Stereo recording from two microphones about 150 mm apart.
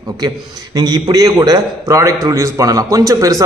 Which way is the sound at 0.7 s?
25° right (ahead or behind).